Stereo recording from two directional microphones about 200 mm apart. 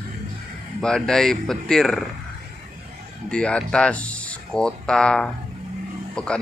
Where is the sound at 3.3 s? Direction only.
5° left (ahead or behind).